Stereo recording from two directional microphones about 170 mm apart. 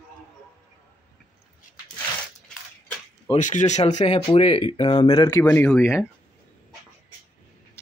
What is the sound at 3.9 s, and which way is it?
Speech, 35° left (ahead or behind).